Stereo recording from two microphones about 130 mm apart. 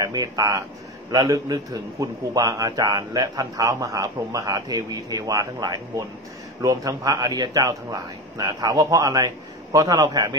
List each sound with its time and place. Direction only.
0.0 s a man's voice: 30° right (ahead or behind)